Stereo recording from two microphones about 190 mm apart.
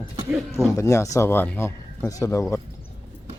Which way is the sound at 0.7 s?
15° left (ahead or behind).